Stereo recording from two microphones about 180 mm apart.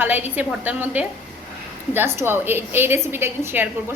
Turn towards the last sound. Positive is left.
turn(degrees=-10)  # may be behind; listen again after turning